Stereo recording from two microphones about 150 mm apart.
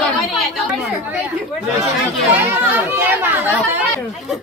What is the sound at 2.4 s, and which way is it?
Chatter, 15° right (ahead or behind).